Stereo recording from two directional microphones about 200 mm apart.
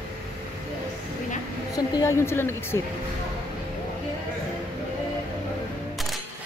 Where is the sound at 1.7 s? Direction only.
15° left (ahead or behind).